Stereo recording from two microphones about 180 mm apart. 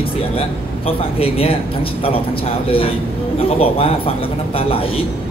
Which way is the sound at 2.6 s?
30° left (ahead or behind).